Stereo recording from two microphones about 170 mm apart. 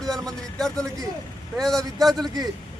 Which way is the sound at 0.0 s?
5° left (ahead or behind).